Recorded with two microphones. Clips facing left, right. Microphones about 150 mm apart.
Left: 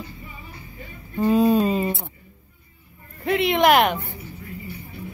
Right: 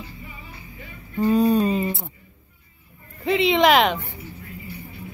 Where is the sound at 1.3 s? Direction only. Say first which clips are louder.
Left 1 dB; 5° left (ahead or behind).